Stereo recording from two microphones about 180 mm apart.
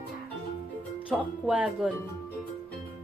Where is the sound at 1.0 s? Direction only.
5° right (ahead or behind).